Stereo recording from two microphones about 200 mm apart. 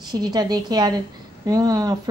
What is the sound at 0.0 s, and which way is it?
A woman's voice, 20° right (ahead or behind).